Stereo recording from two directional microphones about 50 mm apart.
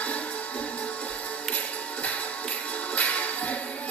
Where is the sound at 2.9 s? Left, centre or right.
Left.